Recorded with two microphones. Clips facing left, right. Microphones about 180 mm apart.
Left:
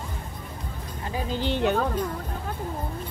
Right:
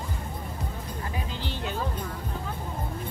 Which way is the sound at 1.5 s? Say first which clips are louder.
Left 10 dB; 65° left (ahead or behind).